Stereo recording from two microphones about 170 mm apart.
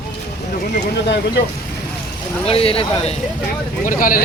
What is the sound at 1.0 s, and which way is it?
Speech, 90° left.